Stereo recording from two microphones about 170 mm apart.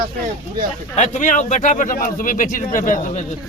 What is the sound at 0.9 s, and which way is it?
Speech, 45° left (ahead or behind).